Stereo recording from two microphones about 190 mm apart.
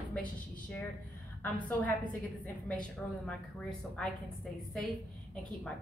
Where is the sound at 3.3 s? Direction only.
5° left (ahead or behind).